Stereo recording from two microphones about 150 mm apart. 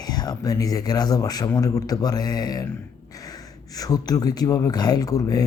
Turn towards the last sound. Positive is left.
turn(degrees=25)  # may be behind; listen again after turning